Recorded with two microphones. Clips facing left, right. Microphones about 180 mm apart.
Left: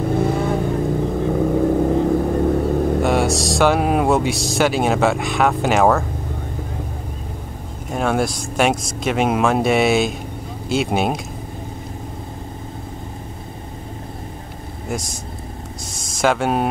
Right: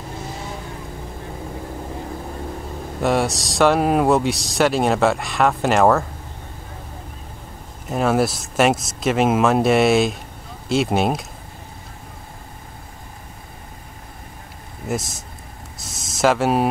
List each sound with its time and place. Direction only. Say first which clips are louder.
0.0 s vehicle: left 13 dB; 60° left (ahead or behind)
3.0 s speech: left 2 dB; centre (ahead or behind)
7.9 s speech: right 1 dB; centre (ahead or behind)
14.9 s speech: right 1 dB; centre (ahead or behind)